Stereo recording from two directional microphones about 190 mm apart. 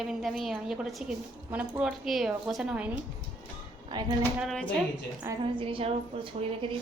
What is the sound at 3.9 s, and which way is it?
Speech, 20° right (ahead or behind).